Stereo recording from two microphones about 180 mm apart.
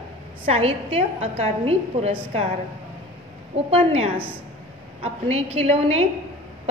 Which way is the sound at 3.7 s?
35° right (ahead or behind).